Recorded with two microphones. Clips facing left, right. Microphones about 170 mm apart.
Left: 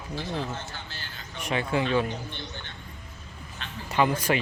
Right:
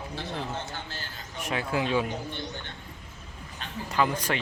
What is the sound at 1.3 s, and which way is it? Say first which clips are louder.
Speech: left 2 dB; centre (ahead or behind).